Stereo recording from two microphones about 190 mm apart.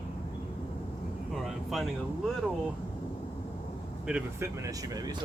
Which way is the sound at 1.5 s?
Centre (ahead or behind).